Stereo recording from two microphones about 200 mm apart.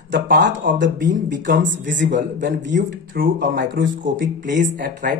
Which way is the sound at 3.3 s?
65° right (ahead or behind).